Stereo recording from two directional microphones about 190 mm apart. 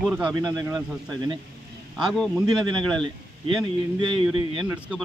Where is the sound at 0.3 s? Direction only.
20° right (ahead or behind).